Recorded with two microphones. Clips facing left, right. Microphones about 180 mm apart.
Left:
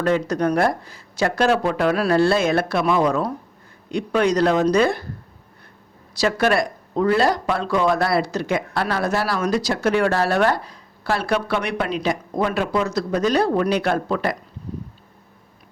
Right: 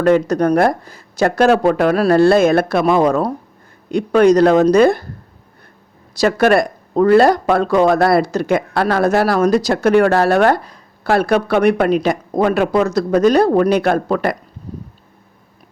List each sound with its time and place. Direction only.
0.0 s speech: 45° right (ahead or behind)
6.1 s speech: 50° right (ahead or behind)